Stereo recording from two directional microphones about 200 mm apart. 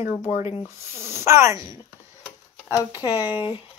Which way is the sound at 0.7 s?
15° right (ahead or behind).